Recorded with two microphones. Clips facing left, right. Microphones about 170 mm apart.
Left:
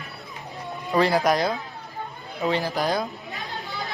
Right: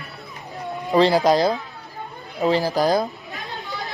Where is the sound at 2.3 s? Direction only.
35° right (ahead or behind).